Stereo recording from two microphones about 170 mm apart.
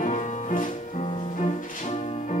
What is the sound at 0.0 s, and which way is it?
Music, 50° left (ahead or behind).